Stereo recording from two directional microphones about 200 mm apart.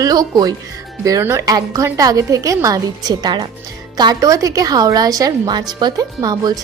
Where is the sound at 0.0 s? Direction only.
20° right (ahead or behind).